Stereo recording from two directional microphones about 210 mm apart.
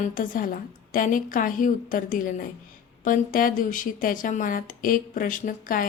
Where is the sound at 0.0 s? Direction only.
40° left (ahead or behind).